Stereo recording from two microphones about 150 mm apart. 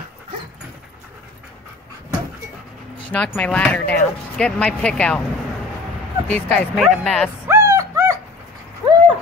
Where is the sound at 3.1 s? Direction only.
10° left (ahead or behind).